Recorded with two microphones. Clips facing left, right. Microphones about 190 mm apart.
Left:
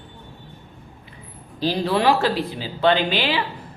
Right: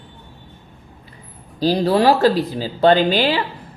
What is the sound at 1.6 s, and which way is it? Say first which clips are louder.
Speech: right 5 dB; 40° right (ahead or behind).